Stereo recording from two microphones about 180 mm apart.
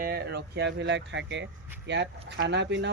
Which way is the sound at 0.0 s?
60° right (ahead or behind).